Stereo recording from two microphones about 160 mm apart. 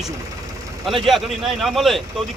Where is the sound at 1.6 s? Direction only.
Centre (ahead or behind).